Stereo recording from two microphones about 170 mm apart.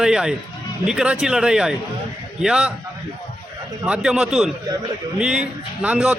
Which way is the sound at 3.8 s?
5° right (ahead or behind).